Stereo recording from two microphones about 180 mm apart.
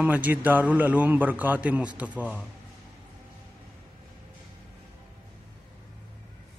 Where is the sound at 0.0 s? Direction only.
10° right (ahead or behind).